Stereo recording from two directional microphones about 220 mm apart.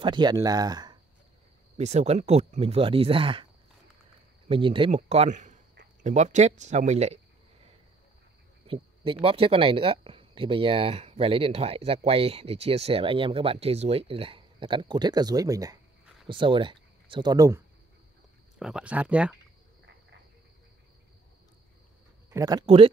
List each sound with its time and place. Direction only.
0.0 s speech: 20° right (ahead or behind)
1.8 s speech: 30° right (ahead or behind)
4.5 s speech: 25° right (ahead or behind)
8.6 s speech: 25° right (ahead or behind)
18.6 s speech: 5° right (ahead or behind)
22.3 s speech: 15° right (ahead or behind)